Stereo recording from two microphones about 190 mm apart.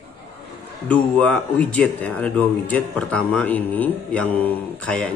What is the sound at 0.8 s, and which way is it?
Speech, 5° left (ahead or behind).